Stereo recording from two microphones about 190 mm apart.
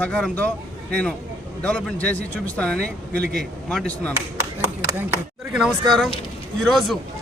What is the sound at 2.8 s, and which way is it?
Speech, 55° right (ahead or behind).